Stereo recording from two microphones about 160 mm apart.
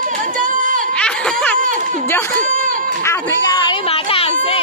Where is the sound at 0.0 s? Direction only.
60° right (ahead or behind).